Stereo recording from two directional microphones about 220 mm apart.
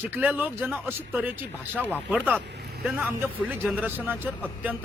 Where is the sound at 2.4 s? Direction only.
50° right (ahead or behind).